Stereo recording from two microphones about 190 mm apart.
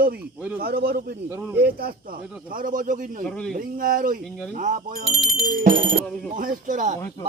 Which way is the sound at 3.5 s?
45° right (ahead or behind).